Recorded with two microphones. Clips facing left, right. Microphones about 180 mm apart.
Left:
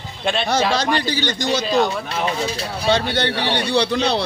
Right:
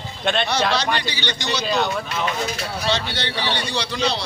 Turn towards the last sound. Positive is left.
turn(degrees=55)  # may be behind; listen again after turning